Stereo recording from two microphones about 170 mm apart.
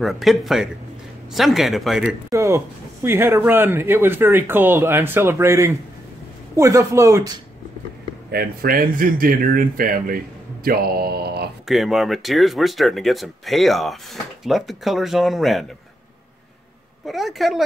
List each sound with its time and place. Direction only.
0.0 s speech: centre (ahead or behind)
2.3 s speech: 15° right (ahead or behind)
8.3 s speech: 65° right (ahead or behind)
11.6 s speech: centre (ahead or behind)
17.0 s speech: centre (ahead or behind)